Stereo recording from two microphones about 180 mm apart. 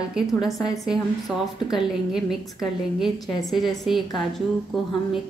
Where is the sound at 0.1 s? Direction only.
Centre (ahead or behind).